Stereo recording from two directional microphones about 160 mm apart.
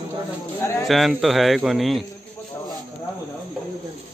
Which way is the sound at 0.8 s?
Centre (ahead or behind).